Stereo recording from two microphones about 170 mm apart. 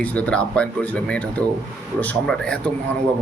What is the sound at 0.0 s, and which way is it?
A man's voice, 10° left (ahead or behind).